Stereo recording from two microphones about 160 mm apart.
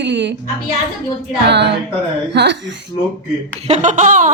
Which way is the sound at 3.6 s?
50° right (ahead or behind).